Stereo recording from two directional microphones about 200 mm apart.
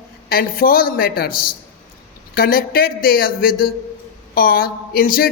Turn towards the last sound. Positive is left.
turn(degrees=45)  # may be behind; listen again after turning